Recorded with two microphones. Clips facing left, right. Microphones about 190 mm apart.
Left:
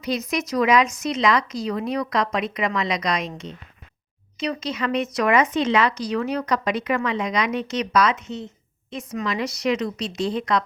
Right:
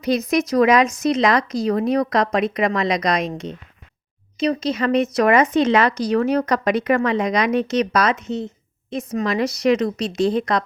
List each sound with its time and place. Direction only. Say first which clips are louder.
0.0 s a woman's voice: right 6 dB; 40° right (ahead or behind)